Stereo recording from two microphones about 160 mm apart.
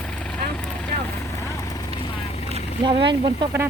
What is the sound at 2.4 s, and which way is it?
Boat, 35° right (ahead or behind).